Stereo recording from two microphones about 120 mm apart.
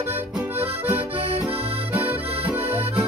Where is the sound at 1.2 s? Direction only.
55° right (ahead or behind).